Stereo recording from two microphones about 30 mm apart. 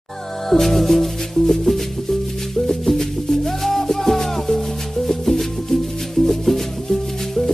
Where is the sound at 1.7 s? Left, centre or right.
Centre.